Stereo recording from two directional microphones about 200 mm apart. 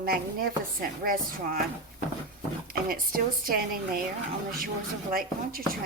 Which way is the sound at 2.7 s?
45° right (ahead or behind).